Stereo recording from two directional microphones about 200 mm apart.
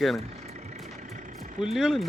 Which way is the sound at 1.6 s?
5° right (ahead or behind).